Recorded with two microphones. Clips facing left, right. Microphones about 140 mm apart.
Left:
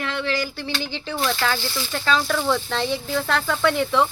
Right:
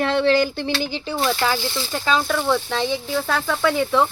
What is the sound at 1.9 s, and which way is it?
Speech, 10° right (ahead or behind).